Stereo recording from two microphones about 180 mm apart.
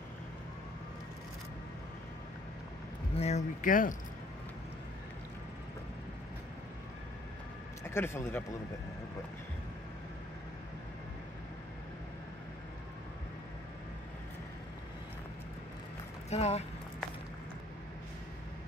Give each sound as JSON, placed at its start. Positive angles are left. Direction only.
{"t": 3.2, "sound": "speech", "side_deg": 40}
{"t": 7.9, "sound": "speech", "side_deg": 15}
{"t": 16.3, "sound": "speech", "side_deg": 35}